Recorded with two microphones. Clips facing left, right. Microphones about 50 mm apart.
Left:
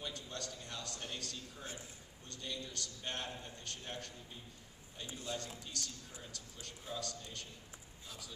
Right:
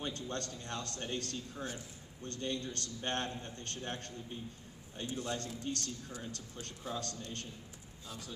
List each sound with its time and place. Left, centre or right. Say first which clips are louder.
0.0 s a man's voice: right 5 dB; right
5.1 s a man's voice: right 4 dB; right